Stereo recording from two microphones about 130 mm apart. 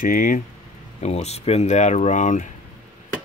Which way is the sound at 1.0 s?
55° left (ahead or behind).